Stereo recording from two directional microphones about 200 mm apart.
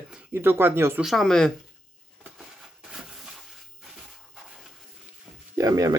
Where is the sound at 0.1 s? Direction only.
10° right (ahead or behind).